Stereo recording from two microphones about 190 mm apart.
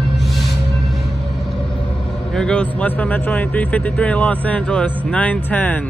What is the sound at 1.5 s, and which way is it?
Vehicle, 30° left (ahead or behind).